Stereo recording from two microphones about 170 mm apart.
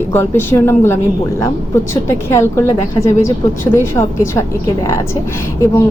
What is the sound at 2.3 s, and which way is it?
A woman's voice, 15° left (ahead or behind).